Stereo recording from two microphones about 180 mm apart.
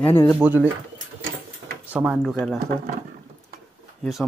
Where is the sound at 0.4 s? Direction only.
10° right (ahead or behind).